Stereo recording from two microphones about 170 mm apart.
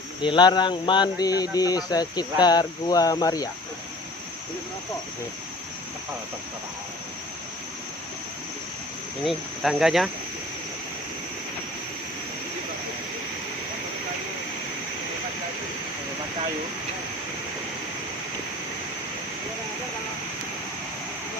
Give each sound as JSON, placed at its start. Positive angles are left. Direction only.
{"t": 0.2, "sound": "speech", "side_deg": 25}
{"t": 9.2, "sound": "cricket", "side_deg": 0}